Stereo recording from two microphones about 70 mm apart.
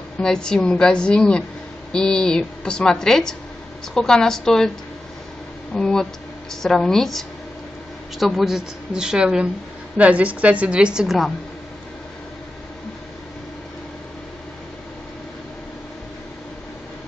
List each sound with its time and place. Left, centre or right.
0.2 s a woman's voice: centre
5.8 s a woman's voice: centre